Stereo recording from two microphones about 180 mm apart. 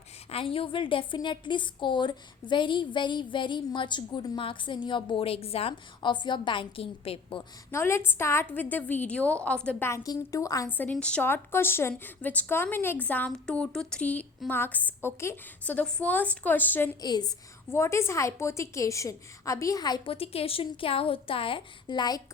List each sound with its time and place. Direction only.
0.3 s a woman's voice: 30° left (ahead or behind)
7.7 s a woman's voice: 15° left (ahead or behind)
17.0 s a woman's voice: 20° left (ahead or behind)